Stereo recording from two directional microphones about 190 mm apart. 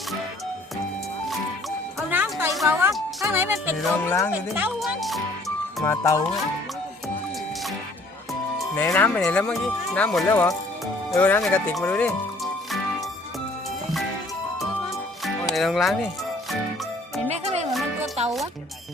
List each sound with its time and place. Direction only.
2.0 s music: 10° right (ahead or behind)
2.6 s speech: 10° right (ahead or behind)
4.0 s speech: 15° left (ahead or behind)
4.3 s speech: 10° right (ahead or behind)
5.8 s speech: 15° left (ahead or behind)
8.7 s speech: 10° left (ahead or behind)
15.2 s music: centre (ahead or behind)
17.2 s music: 35° right (ahead or behind)
17.7 s music: centre (ahead or behind)